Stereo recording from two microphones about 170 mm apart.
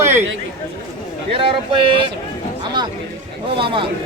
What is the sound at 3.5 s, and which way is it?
Speech, 30° right (ahead or behind).